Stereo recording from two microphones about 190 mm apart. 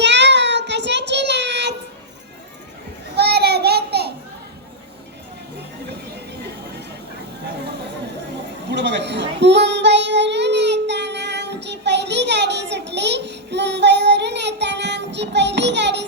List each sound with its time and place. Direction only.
0.0 s child singing: 65° right (ahead or behind)
3.2 s child singing: 55° right (ahead or behind)
8.7 s child singing: 65° right (ahead or behind)